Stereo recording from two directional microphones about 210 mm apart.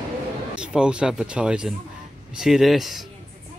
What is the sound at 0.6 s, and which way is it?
Speech, 5° right (ahead or behind).